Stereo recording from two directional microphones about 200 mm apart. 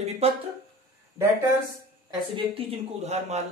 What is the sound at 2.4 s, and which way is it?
Speech, 30° right (ahead or behind).